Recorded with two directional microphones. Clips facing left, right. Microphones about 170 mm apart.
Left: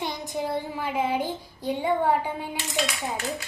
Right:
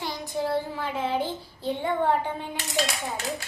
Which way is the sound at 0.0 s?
20° left (ahead or behind).